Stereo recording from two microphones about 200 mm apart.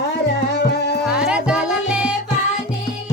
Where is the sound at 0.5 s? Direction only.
55° left (ahead or behind).